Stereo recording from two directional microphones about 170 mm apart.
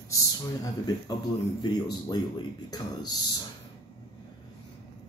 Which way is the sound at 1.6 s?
25° left (ahead or behind).